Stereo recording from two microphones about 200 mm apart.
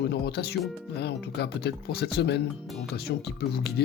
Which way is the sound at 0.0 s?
55° left (ahead or behind).